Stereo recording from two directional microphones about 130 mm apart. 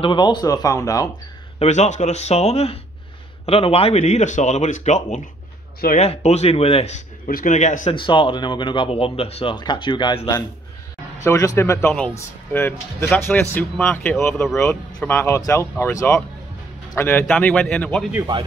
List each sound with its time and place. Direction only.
0.0 s speech: 35° left (ahead or behind)
1.6 s speech: 60° left (ahead or behind)
5.9 s speech: 55° left (ahead or behind)
7.2 s speech: 85° left; by 7.9 s 65° left (ahead or behind)
7.9 s speech: 40° left (ahead or behind)
11.2 s speech: 25° left (ahead or behind)